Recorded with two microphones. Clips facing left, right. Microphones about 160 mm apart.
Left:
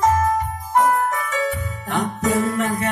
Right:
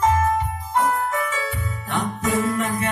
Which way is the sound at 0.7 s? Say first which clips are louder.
Left 4 dB; 40° left (ahead or behind).